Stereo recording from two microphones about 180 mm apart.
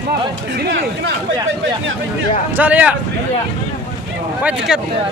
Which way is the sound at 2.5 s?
10° right (ahead or behind).